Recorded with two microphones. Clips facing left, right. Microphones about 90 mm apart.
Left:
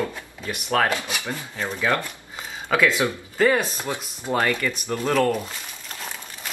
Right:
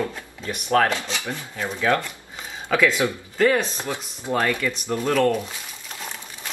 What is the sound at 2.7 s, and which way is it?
Speech, 15° left (ahead or behind).